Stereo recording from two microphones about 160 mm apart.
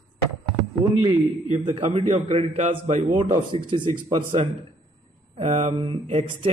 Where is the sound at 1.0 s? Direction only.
45° right (ahead or behind).